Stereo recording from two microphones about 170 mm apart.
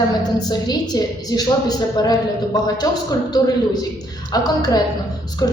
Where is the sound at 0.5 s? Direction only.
25° left (ahead or behind).